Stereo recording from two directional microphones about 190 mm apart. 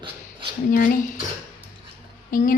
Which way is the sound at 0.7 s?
45° left (ahead or behind).